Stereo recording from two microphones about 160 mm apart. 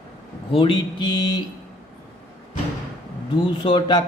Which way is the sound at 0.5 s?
30° left (ahead or behind).